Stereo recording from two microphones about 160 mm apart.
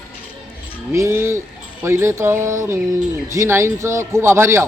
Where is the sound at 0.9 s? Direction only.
15° right (ahead or behind).